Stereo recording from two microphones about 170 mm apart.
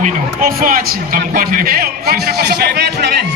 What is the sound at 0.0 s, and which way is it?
A man's voice, 55° right (ahead or behind).